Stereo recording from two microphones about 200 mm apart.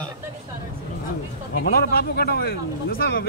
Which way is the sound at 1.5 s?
50° left (ahead or behind).